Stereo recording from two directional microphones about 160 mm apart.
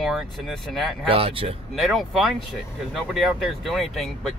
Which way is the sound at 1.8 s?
Centre (ahead or behind).